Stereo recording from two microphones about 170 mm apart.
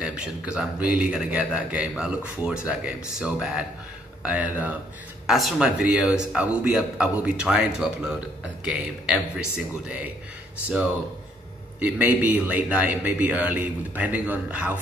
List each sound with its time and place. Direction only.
0.0 s speech: 5° right (ahead or behind)
11.8 s speech: 10° right (ahead or behind)